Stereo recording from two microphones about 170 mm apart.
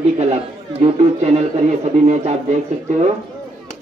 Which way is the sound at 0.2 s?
35° right (ahead or behind).